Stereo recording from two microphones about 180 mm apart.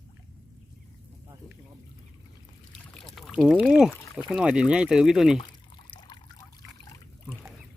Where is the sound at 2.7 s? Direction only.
Centre (ahead or behind).